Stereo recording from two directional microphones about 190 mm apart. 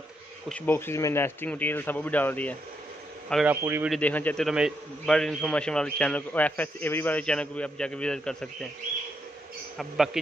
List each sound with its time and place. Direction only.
0.5 s speech: 10° left (ahead or behind)
3.4 s a man's voice: 10° right (ahead or behind)
3.9 s a man's voice: 10° left (ahead or behind)
9.8 s a man's voice: centre (ahead or behind)